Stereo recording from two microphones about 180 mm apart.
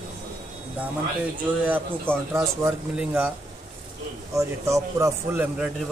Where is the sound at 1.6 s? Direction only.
10° right (ahead or behind).